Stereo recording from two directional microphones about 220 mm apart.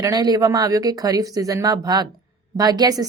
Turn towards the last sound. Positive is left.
turn(degrees=-20)  # may be behind; listen again after turning